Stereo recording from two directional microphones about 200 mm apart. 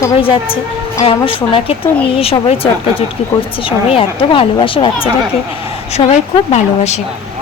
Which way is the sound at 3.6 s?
25° left (ahead or behind).